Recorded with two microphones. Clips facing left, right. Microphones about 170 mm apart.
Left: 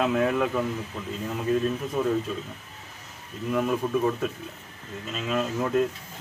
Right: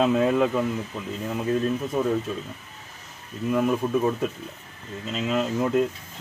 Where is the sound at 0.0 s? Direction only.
20° right (ahead or behind).